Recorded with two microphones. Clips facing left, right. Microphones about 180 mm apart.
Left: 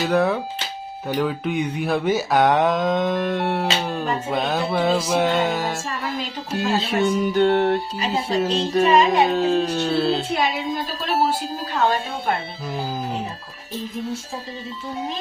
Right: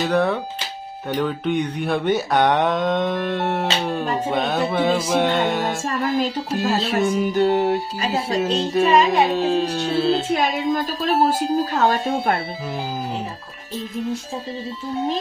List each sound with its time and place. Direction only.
0.0 s speech: centre (ahead or behind)
6.5 s music: centre (ahead or behind)
8.1 s speech: centre (ahead or behind)
11.0 s speech: 40° right (ahead or behind)